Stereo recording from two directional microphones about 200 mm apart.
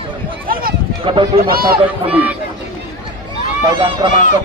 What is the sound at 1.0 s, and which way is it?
Speech, 25° right (ahead or behind).